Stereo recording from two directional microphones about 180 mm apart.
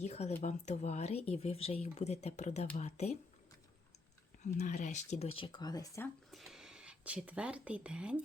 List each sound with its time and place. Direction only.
0.0 s speech: 40° left (ahead or behind)
4.4 s speech: 40° left (ahead or behind); by 6.1 s 20° left (ahead or behind)
6.3 s speech: centre (ahead or behind)